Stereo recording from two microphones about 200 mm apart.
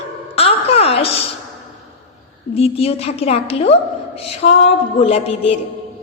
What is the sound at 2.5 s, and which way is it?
A woman's voice, 30° left (ahead or behind).